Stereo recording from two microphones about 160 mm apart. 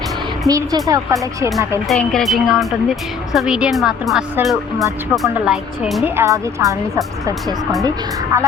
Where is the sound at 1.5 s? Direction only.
Centre (ahead or behind).